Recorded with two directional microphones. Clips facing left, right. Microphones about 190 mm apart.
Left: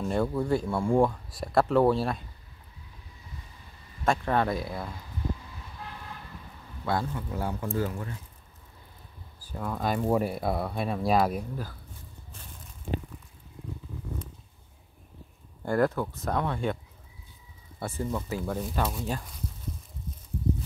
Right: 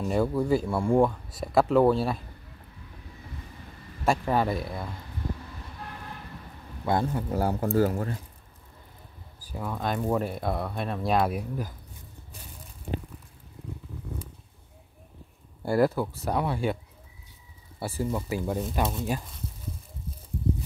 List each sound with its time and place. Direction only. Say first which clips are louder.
0.0 s speech: right 2 dB; 5° right (ahead or behind)
4.0 s speech: right 1 dB; 10° right (ahead or behind)
6.8 s speech: right 3 dB; 20° right (ahead or behind)
7.1 s speech: right 5 dB; 40° right (ahead or behind)
9.5 s speech: left 1 dB; centre (ahead or behind)
11.3 s speech: right 2 dB; 15° right (ahead or behind)
15.6 s speech: right 2 dB; 10° right (ahead or behind)
17.7 s speech: right 2 dB; 10° right (ahead or behind)